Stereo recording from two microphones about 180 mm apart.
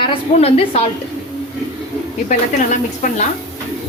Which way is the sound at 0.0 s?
30° left (ahead or behind).